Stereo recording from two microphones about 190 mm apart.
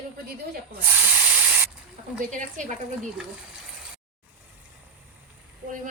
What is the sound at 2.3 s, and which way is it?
Speech, 40° right (ahead or behind).